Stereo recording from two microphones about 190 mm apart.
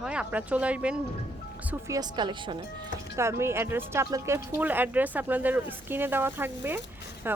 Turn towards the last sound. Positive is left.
turn(degrees=-10)  # may be behind; listen again after turning